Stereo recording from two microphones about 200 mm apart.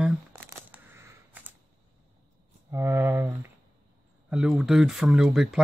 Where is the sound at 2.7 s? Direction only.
10° right (ahead or behind).